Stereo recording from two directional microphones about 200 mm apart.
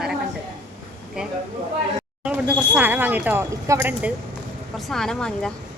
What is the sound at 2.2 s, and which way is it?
Speech, 5° right (ahead or behind).